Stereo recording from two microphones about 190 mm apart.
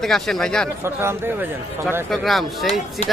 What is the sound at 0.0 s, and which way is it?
Speech, centre (ahead or behind).